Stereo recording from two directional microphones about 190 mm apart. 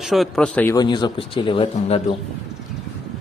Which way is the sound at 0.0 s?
Centre (ahead or behind).